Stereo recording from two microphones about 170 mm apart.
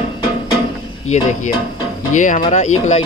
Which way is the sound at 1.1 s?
45° left (ahead or behind).